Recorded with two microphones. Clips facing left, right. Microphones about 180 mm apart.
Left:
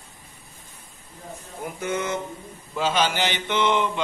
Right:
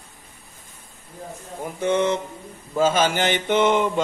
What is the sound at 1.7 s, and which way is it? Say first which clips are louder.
Speech: right 7 dB; 30° right (ahead or behind).